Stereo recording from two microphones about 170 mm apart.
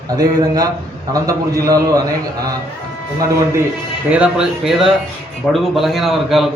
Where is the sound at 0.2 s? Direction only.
20° right (ahead or behind).